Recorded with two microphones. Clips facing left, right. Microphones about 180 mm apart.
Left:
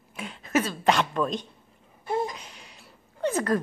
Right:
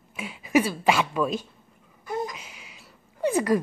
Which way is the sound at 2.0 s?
25° left (ahead or behind).